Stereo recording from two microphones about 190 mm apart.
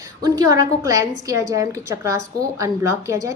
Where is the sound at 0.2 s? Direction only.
20° right (ahead or behind).